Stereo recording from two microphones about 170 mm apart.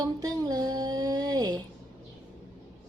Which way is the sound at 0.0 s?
20° right (ahead or behind).